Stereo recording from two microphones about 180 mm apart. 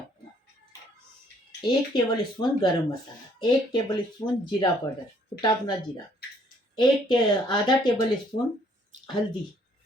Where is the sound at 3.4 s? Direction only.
25° left (ahead or behind).